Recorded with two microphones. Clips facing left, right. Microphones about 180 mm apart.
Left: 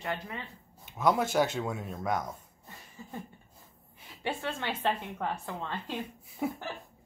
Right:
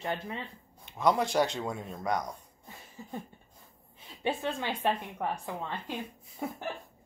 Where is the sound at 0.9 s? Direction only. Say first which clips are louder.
Even; 5° left (ahead or behind).